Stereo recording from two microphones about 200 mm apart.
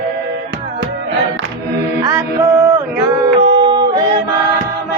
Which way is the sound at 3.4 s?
25° right (ahead or behind).